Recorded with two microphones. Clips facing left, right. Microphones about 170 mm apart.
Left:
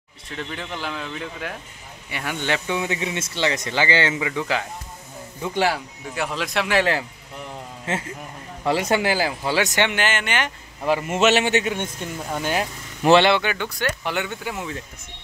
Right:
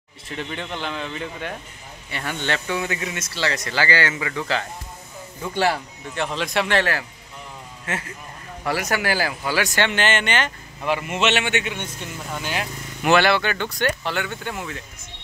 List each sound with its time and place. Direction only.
0.4 s a man's voice: centre (ahead or behind)
2.0 s a man's voice: 10° left (ahead or behind)
6.8 s speech: 20° left (ahead or behind)
8.6 s speech: 25° left (ahead or behind); by 10.5 s 10° left (ahead or behind)
10.8 s speech: 40° left (ahead or behind)
13.0 s speech: 25° left (ahead or behind); by 14.6 s 5° left (ahead or behind)